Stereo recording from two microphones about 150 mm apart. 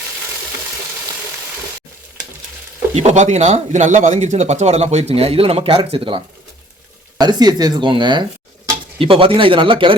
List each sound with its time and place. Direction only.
2.9 s speech: 45° right (ahead or behind)
7.2 s speech: 25° right (ahead or behind)